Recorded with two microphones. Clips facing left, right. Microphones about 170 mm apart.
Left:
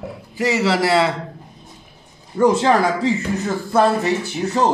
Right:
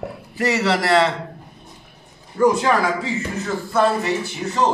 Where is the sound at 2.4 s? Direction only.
25° left (ahead or behind).